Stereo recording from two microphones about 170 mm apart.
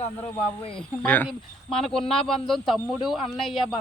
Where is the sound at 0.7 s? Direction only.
10° left (ahead or behind).